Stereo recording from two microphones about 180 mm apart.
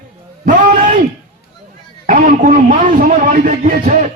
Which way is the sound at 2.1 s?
50° right (ahead or behind).